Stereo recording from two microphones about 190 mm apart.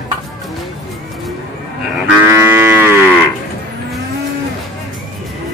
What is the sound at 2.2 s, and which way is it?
Livestock, 10° right (ahead or behind).